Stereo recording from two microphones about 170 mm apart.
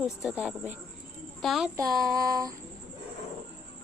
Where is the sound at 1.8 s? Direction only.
20° right (ahead or behind).